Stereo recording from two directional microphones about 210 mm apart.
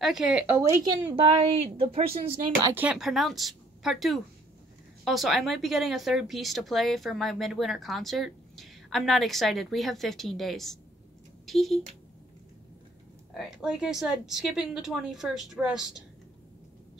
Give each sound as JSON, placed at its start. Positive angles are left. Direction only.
{"t": 0.0, "sound": "speech", "side_deg": 0}
{"t": 1.1, "sound": "a woman's voice", "side_deg": -25}
{"t": 2.7, "sound": "speech", "side_deg": -5}
{"t": 13.4, "sound": "speech", "side_deg": 0}